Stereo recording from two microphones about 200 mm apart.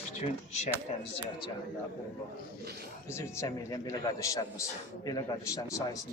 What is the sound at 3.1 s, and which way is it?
A man's voice, 15° left (ahead or behind).